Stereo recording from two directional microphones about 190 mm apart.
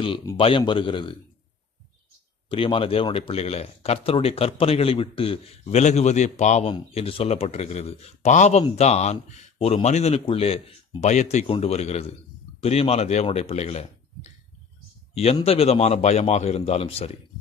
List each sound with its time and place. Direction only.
0.4 s speech: 25° left (ahead or behind)
2.5 s speech: 30° left (ahead or behind)
15.4 s speech: 30° left (ahead or behind)